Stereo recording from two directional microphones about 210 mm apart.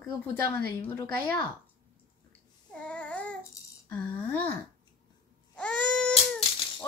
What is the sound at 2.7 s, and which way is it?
Babbling, 5° left (ahead or behind).